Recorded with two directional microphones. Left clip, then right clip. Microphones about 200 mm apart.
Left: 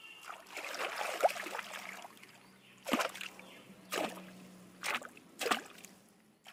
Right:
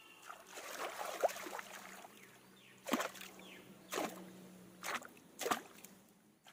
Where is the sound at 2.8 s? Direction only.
5° left (ahead or behind).